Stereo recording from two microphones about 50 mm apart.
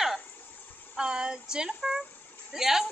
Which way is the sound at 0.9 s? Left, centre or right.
Centre.